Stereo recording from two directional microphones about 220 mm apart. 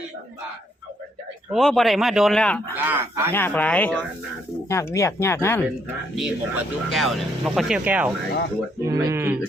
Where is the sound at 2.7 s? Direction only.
10° right (ahead or behind).